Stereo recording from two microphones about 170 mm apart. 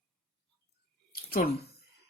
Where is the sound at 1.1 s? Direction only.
65° left (ahead or behind).